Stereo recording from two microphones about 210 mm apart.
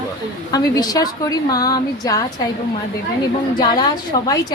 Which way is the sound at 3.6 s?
20° left (ahead or behind).